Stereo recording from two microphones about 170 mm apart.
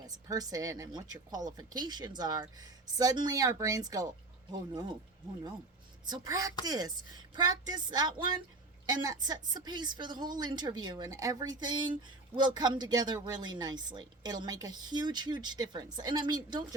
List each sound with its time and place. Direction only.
0.3 s a woman's voice: 20° right (ahead or behind)
6.1 s a woman's voice: 25° right (ahead or behind)